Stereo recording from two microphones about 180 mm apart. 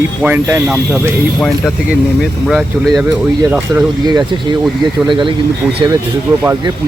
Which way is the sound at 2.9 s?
20° right (ahead or behind).